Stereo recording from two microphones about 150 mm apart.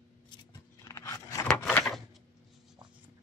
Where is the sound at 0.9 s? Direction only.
20° left (ahead or behind).